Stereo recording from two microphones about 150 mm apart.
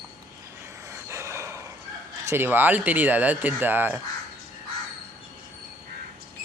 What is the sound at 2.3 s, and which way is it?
Speech, 15° right (ahead or behind).